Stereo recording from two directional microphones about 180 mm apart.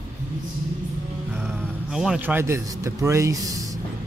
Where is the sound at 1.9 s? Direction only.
5° right (ahead or behind).